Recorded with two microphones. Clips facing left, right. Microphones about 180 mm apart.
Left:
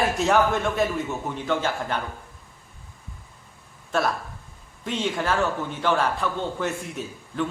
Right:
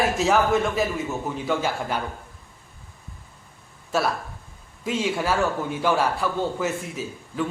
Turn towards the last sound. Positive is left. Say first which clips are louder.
# even
turn(degrees=-5)  # may be behind; listen again after turning